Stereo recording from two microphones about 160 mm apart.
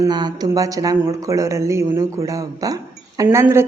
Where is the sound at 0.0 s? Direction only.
25° right (ahead or behind).